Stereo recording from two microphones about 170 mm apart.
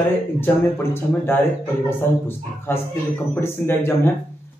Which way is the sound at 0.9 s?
15° left (ahead or behind).